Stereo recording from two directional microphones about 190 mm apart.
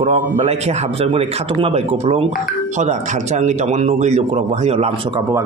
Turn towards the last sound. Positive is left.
turn(degrees=-25)  # may be behind; listen again after turning